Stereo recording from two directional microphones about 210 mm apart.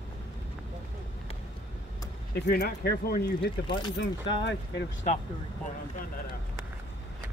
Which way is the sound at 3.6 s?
20° left (ahead or behind).